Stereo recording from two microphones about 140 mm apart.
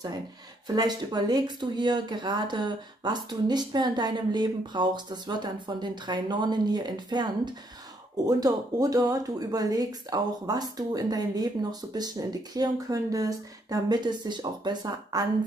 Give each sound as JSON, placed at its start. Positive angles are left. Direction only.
{"t": 0.7, "sound": "speech", "side_deg": -30}